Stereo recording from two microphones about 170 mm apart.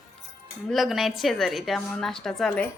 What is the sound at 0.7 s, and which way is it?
A woman's voice, centre (ahead or behind).